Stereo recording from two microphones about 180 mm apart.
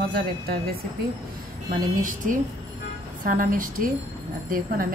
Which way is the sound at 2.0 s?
45° right (ahead or behind).